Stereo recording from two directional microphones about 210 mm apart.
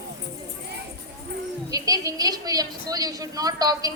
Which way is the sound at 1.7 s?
15° right (ahead or behind).